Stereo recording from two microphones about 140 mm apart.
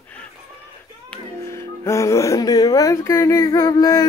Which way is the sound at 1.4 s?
20° left (ahead or behind).